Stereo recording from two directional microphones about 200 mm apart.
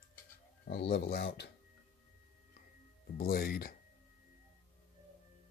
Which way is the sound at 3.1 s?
45° left (ahead or behind).